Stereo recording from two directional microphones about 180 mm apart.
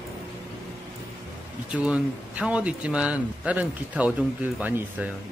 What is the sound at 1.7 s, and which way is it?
Speech, 5° right (ahead or behind).